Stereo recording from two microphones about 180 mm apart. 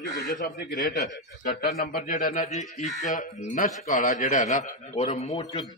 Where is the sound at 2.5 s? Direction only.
40° left (ahead or behind).